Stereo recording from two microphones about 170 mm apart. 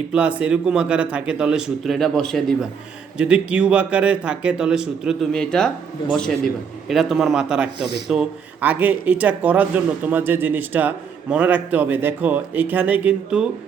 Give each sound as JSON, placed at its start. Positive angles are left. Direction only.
{"t": 0.1, "sound": "a man's voice", "side_deg": -5}